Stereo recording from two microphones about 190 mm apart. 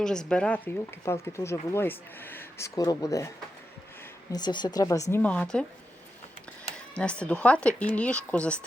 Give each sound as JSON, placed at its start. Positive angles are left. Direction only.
{"t": 0.0, "sound": "speech", "side_deg": 5}
{"t": 6.9, "sound": "speech", "side_deg": 5}